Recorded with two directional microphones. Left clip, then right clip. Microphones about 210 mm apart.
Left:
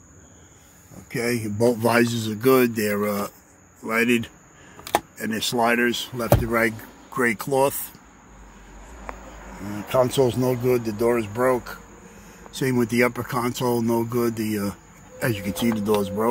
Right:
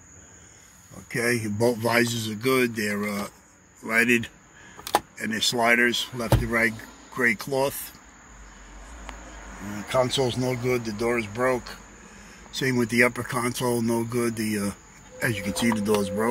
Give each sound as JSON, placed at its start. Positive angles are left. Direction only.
{"t": 1.1, "sound": "speech", "side_deg": 5}
{"t": 1.7, "sound": "speech", "side_deg": 25}
{"t": 3.8, "sound": "speech", "side_deg": 10}
{"t": 9.8, "sound": "speech", "side_deg": 25}